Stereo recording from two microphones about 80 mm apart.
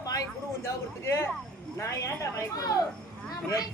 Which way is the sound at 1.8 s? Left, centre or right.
Left.